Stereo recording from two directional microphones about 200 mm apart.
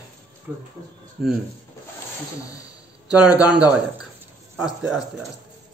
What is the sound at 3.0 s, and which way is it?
Speech, 5° right (ahead or behind).